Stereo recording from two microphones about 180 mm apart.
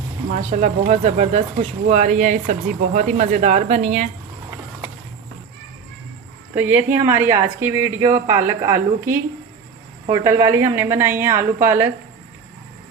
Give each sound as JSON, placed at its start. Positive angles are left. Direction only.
{"t": 0.6, "sound": "speech", "side_deg": -40}
{"t": 6.5, "sound": "a woman's voice", "side_deg": -10}